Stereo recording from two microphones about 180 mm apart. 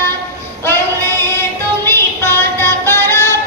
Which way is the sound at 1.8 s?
15° left (ahead or behind).